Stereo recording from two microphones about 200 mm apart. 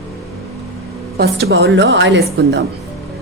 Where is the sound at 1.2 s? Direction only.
55° right (ahead or behind).